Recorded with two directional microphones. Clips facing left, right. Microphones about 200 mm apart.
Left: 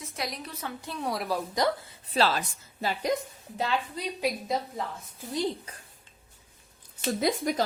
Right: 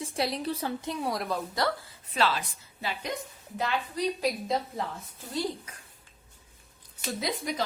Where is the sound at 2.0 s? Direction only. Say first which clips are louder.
Left 2 dB; 35° left (ahead or behind).